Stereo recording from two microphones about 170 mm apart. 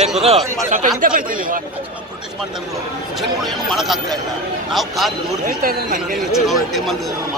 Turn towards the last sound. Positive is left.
turn(degrees=0)  # may be behind; listen again after turning